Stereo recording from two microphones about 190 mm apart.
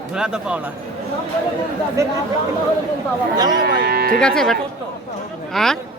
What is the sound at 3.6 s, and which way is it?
Speech, 55° right (ahead or behind).